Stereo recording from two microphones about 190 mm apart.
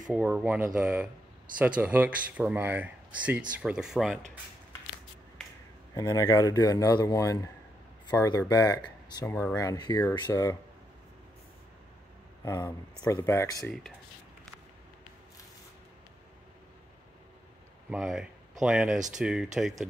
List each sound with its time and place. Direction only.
0.1 s speech: 5° right (ahead or behind)
5.9 s a man's voice: 20° left (ahead or behind)
12.4 s a man's voice: 15° left (ahead or behind)
17.8 s speech: 5° right (ahead or behind)